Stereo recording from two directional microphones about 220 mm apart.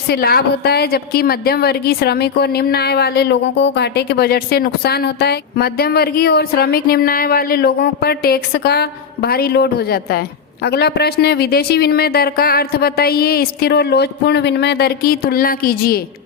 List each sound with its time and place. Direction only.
0.1 s a woman's voice: 45° left (ahead or behind)